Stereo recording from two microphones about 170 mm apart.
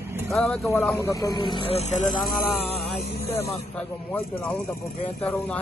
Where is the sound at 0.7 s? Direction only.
15° left (ahead or behind); by 2.1 s 40° left (ahead or behind).